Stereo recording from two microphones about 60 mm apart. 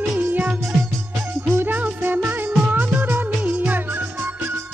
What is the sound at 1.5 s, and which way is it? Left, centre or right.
Music, right.